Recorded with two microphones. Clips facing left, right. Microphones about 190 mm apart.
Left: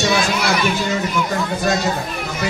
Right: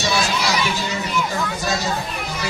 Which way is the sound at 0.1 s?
55° left (ahead or behind).